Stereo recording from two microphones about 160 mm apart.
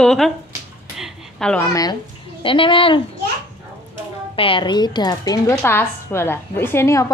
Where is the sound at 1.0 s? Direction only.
5° left (ahead or behind).